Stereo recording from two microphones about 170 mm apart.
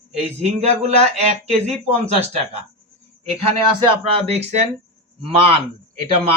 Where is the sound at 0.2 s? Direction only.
40° right (ahead or behind).